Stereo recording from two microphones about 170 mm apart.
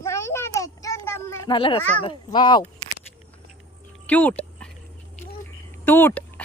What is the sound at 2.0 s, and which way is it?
Speech, 30° left (ahead or behind).